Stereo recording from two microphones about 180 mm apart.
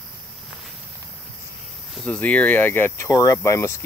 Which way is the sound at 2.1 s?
5° left (ahead or behind).